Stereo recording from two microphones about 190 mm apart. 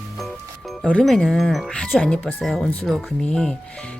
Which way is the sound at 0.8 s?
5° left (ahead or behind).